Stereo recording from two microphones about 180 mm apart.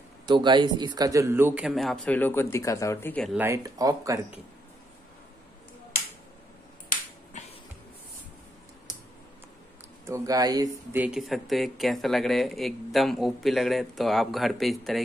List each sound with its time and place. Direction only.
0.3 s speech: 25° right (ahead or behind); by 3.3 s 5° left (ahead or behind)
3.3 s speech: 15° right (ahead or behind)
7.3 s music: 40° left (ahead or behind)
10.0 s speech: 20° right (ahead or behind)
11.0 s speech: 5° right (ahead or behind)